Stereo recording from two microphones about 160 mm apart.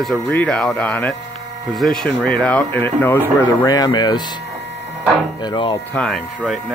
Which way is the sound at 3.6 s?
25° left (ahead or behind).